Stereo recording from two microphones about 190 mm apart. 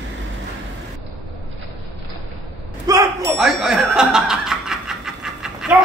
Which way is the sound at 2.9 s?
20° right (ahead or behind).